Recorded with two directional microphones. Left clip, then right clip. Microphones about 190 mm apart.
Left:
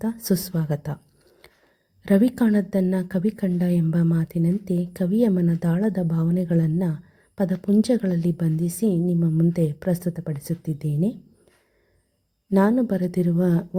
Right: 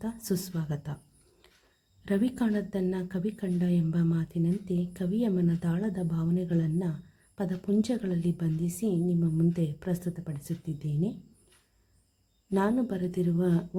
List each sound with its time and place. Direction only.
0.0 s a woman's voice: 30° left (ahead or behind)
2.0 s a woman's voice: 35° left (ahead or behind)
12.5 s speech: 25° left (ahead or behind)